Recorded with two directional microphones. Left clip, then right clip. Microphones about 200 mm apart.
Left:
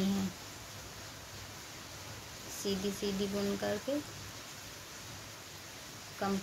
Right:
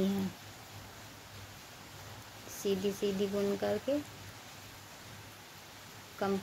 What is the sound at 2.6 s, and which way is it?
Speech, 30° right (ahead or behind).